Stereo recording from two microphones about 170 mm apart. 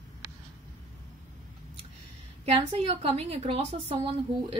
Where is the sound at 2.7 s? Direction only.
35° right (ahead or behind).